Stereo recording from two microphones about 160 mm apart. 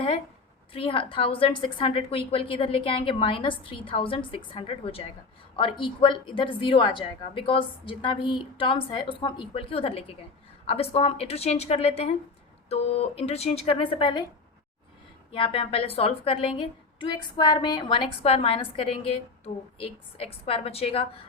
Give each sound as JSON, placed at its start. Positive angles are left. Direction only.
{"t": 0.7, "sound": "a woman's voice", "side_deg": 35}
{"t": 15.3, "sound": "a woman's voice", "side_deg": 35}